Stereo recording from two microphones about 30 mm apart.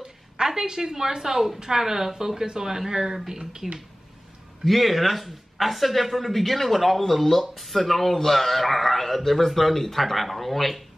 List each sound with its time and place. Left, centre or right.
0.0 s a woman's voice: centre
4.6 s speech: centre